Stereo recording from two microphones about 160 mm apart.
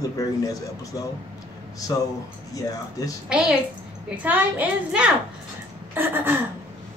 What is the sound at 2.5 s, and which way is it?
Speech, 20° left (ahead or behind).